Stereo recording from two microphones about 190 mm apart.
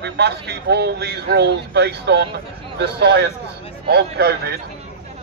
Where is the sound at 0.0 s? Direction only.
60° right (ahead or behind).